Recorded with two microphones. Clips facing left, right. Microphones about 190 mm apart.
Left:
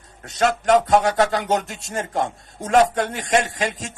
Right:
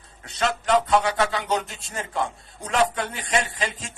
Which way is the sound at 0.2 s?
50° left (ahead or behind).